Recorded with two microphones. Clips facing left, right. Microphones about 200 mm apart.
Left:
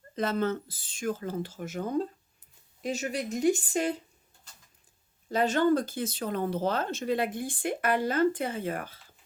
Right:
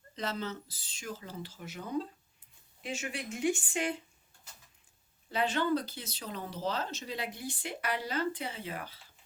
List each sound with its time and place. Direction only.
0.2 s a woman's voice: 55° left (ahead or behind)
5.3 s speech: 45° left (ahead or behind)